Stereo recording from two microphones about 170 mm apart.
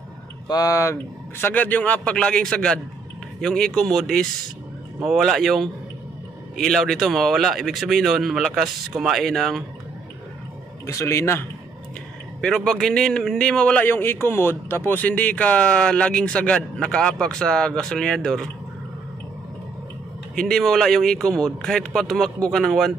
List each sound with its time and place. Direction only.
0.5 s a man's voice: 20° left (ahead or behind); by 9.6 s centre (ahead or behind)
10.9 s a man's voice: 15° left (ahead or behind)
12.4 s a man's voice: 5° left (ahead or behind)
20.3 s a man's voice: 5° left (ahead or behind)